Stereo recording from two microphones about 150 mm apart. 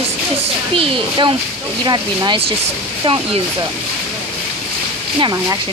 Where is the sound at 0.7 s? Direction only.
30° right (ahead or behind).